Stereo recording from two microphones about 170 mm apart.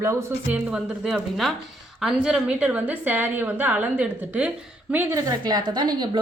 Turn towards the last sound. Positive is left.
turn(degrees=-25)  # may be behind; listen again after turning